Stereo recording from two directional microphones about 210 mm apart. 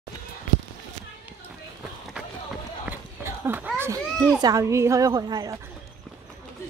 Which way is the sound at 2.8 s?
10° right (ahead or behind).